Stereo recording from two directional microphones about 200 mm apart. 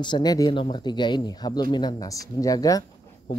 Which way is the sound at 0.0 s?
20° left (ahead or behind).